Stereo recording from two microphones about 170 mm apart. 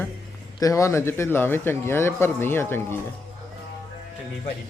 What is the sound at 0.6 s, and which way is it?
Speech, 20° left (ahead or behind).